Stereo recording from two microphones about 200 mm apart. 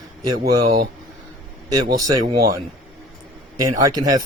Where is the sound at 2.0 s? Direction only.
15° right (ahead or behind).